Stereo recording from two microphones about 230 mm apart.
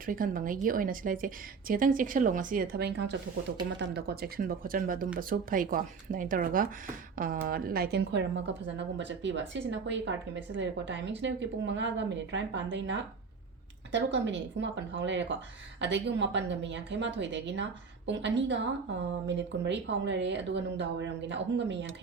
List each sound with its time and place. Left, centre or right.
0.0 s speech: right